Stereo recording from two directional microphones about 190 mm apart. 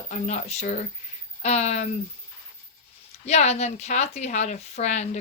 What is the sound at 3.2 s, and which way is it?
Speech, 35° left (ahead or behind).